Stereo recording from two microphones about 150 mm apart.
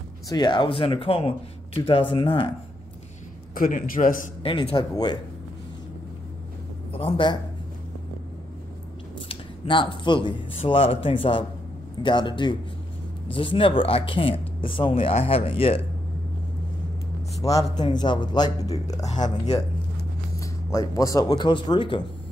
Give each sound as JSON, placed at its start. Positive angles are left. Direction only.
{"t": 0.3, "sound": "speech", "side_deg": 30}
{"t": 3.5, "sound": "a man's voice", "side_deg": 70}
{"t": 4.4, "sound": "speech", "side_deg": 40}
{"t": 6.9, "sound": "speech", "side_deg": 40}
{"t": 9.3, "sound": "speech", "side_deg": 35}
{"t": 17.4, "sound": "speech", "side_deg": 25}
{"t": 19.0, "sound": "speech", "side_deg": 55}
{"t": 20.3, "sound": "speech", "side_deg": 20}